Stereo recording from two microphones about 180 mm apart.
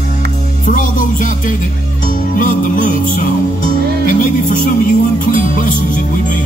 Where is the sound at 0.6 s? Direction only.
50° left (ahead or behind).